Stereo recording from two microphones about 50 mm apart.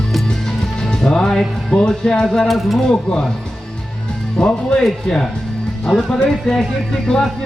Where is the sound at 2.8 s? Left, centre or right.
Centre.